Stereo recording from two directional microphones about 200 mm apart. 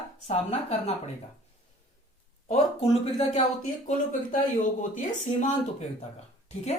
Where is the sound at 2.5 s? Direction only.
30° left (ahead or behind).